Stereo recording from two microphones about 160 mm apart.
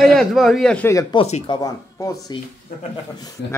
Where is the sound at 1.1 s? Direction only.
45° left (ahead or behind).